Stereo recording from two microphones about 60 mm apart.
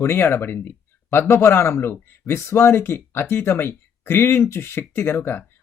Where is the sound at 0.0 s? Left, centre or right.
Left.